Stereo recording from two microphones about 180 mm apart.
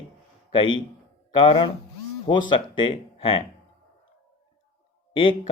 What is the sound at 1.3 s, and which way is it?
Speech, 30° left (ahead or behind).